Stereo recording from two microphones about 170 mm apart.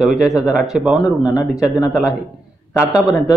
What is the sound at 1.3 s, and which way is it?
Speech, 5° right (ahead or behind).